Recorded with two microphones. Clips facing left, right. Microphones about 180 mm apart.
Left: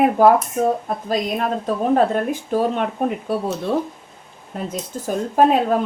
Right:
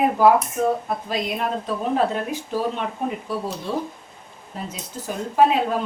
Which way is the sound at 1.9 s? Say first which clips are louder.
Left 5 dB; 50° left (ahead or behind).